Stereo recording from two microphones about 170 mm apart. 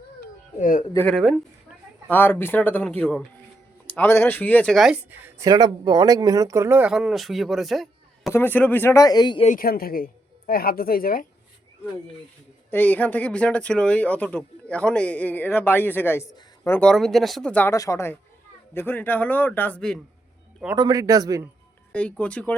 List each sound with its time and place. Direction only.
0.6 s a man's voice: 50° left (ahead or behind)
0.9 s speech: 5° left (ahead or behind)
2.0 s speech: 10° left (ahead or behind); by 5.5 s 10° right (ahead or behind)
5.5 s speech: 25° right (ahead or behind); by 8.3 s centre (ahead or behind)
8.3 s speech: 10° left (ahead or behind)
9.6 s a woman's voice: 60° left (ahead or behind)
12.7 s speech: 10° left (ahead or behind)
16.8 s speech: centre (ahead or behind)
20.7 s speech: 25° right (ahead or behind)
21.9 s speech: 5° left (ahead or behind)